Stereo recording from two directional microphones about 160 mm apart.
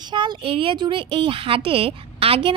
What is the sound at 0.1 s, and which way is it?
A woman's voice, 30° right (ahead or behind).